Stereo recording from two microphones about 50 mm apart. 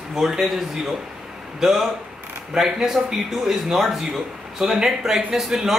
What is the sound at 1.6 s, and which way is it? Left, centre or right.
Speech, centre.